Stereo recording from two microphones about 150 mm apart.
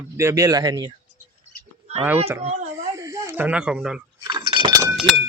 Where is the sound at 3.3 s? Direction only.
10° right (ahead or behind).